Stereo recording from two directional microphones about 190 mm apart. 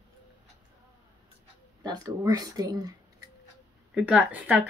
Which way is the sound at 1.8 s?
20° right (ahead or behind).